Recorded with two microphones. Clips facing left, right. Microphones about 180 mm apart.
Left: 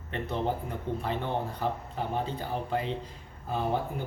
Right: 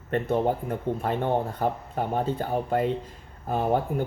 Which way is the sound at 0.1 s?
50° right (ahead or behind).